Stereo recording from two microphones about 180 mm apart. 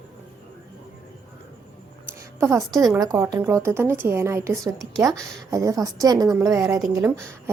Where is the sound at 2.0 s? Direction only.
15° right (ahead or behind).